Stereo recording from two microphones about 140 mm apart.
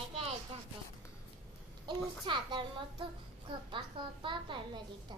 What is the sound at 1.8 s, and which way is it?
A child's voice, 35° right (ahead or behind).